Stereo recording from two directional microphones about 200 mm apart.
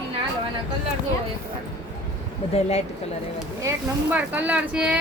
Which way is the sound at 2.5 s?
30° left (ahead or behind).